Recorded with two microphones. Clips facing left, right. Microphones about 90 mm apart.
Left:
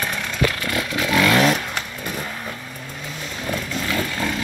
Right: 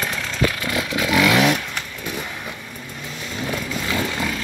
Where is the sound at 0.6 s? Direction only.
15° right (ahead or behind); by 2.3 s 5° left (ahead or behind).